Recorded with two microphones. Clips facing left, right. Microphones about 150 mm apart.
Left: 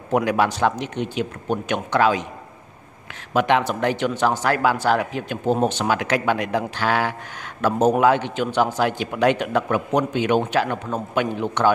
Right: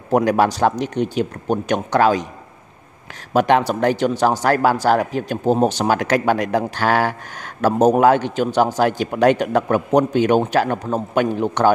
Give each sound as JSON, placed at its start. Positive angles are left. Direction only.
{"t": 0.1, "sound": "speech", "side_deg": -40}
{"t": 3.3, "sound": "speech", "side_deg": -40}